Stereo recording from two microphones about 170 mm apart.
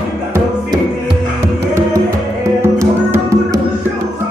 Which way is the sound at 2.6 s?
15° right (ahead or behind).